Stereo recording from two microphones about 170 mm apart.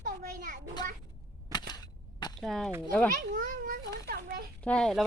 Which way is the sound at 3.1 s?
50° right (ahead or behind).